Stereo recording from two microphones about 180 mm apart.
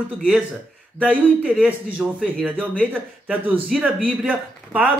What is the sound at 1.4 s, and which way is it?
A man's voice, 5° right (ahead or behind).